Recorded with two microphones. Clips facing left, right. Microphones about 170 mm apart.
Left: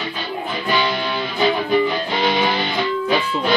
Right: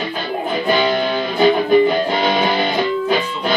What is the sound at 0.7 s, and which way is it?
Music, 50° right (ahead or behind).